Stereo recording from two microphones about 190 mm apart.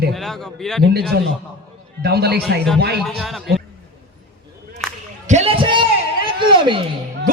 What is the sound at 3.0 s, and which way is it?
Speech, centre (ahead or behind).